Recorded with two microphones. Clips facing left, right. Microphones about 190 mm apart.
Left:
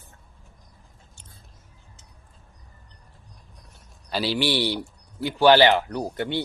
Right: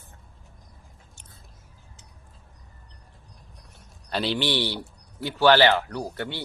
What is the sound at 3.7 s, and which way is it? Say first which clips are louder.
A man's voice: left 1 dB; 5° left (ahead or behind).